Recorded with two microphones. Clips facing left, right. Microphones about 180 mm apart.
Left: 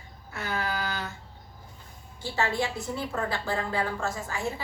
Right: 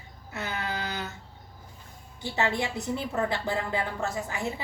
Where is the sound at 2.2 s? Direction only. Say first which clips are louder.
Even; 20° right (ahead or behind).